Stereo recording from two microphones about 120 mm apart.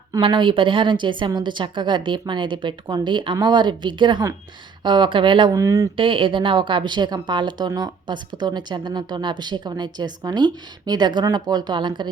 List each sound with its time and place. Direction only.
0.2 s speech: 45° right (ahead or behind)
5.5 s speech: 25° right (ahead or behind)
6.0 s speech: 45° right (ahead or behind)